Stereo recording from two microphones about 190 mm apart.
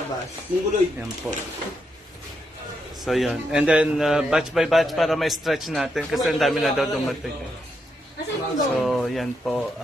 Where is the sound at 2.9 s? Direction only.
Centre (ahead or behind).